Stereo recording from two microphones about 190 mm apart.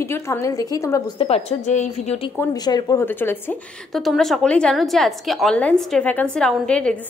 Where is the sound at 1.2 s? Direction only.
35° left (ahead or behind).